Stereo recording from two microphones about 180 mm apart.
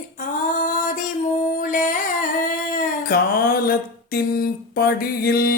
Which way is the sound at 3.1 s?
55° left (ahead or behind).